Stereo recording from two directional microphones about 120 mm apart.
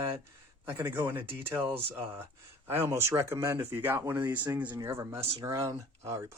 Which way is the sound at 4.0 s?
30° right (ahead or behind).